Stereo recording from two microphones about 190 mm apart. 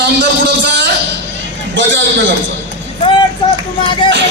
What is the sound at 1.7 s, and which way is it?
Speech, 75° right (ahead or behind).